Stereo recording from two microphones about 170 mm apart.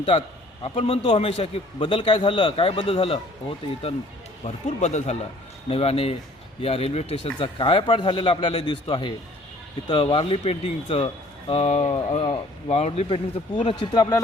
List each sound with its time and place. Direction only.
0.0 s speech: 35° left (ahead or behind)
13.7 s speech: 30° left (ahead or behind)